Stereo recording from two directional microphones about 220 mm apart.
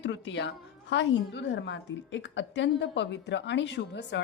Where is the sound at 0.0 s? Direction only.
55° left (ahead or behind).